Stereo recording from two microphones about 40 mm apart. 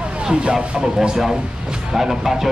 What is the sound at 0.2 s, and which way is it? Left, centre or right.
Speech, right.